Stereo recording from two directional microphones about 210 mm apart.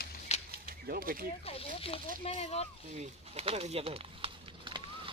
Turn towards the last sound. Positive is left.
turn(degrees=-25)  # may be behind; listen again after turning